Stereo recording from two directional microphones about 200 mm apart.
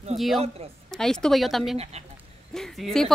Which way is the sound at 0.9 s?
5° left (ahead or behind).